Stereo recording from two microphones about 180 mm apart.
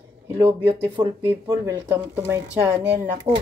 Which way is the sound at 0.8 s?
20° right (ahead or behind).